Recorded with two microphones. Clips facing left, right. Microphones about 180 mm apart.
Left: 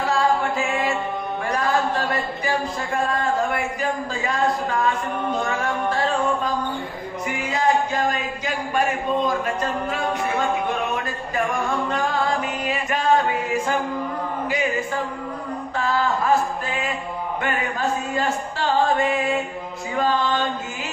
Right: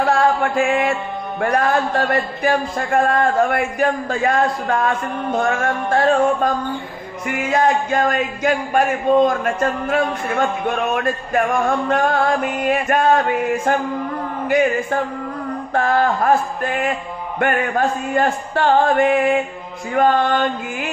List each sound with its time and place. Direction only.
0.0 s music: 55° right (ahead or behind)
1.4 s a man's voice: 55° right (ahead or behind)
5.5 s music: 50° right (ahead or behind)
15.7 s a man's voice: 55° right (ahead or behind)